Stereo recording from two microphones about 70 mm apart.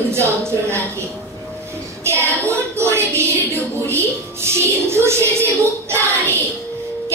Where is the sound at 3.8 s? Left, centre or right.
Right.